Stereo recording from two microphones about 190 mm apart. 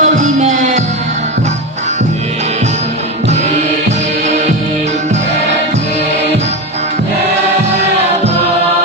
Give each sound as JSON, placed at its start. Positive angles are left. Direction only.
{"t": 0.0, "sound": "music", "side_deg": -40}